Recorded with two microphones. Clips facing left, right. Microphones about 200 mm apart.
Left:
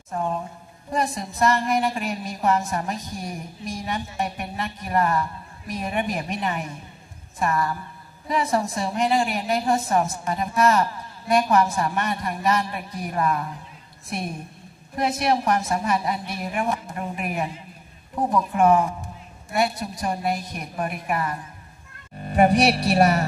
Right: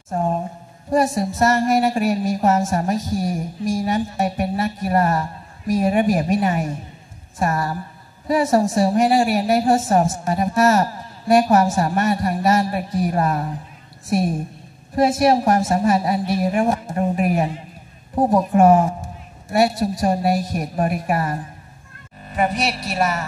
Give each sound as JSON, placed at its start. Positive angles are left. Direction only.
{"t": 0.1, "sound": "a sound", "side_deg": -45}
{"t": 0.9, "sound": "music", "side_deg": -45}
{"t": 22.8, "sound": "speech", "side_deg": 35}